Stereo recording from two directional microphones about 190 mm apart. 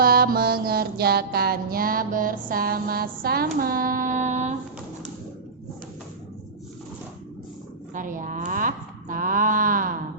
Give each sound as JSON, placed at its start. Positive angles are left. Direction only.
{"t": 0.0, "sound": "mantra", "side_deg": -55}
{"t": 7.9, "sound": "mantra", "side_deg": -45}